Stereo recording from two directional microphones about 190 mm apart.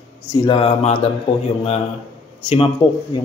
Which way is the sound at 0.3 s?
25° left (ahead or behind).